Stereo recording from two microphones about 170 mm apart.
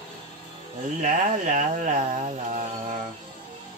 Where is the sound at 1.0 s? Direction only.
45° right (ahead or behind).